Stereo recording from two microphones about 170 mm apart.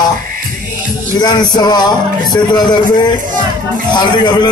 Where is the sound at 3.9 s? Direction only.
25° left (ahead or behind).